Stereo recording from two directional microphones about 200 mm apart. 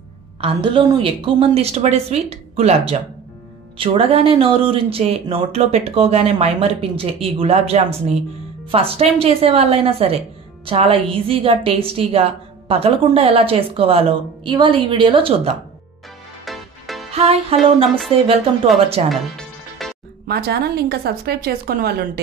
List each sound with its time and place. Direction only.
0.4 s speech: 25° right (ahead or behind)
16.4 s music: centre (ahead or behind)
17.1 s music: 30° right (ahead or behind)
17.8 s a sound: centre (ahead or behind)
19.0 s music: 30° right (ahead or behind)
19.8 s music: centre (ahead or behind)
20.2 s a woman's voice: 55° right (ahead or behind)